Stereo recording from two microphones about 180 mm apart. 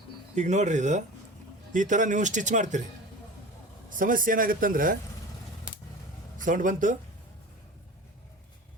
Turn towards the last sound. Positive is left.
turn(degrees=-45)  # may be behind; listen again after turning